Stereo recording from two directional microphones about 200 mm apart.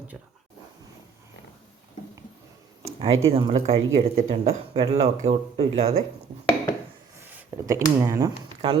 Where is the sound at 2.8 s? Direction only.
30° right (ahead or behind).